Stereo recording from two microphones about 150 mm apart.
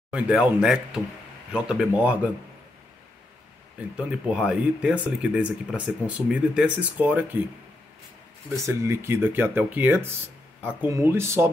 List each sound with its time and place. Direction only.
0.1 s speech: 5° right (ahead or behind)
3.9 s speech: 5° right (ahead or behind)
8.6 s speech: 20° right (ahead or behind)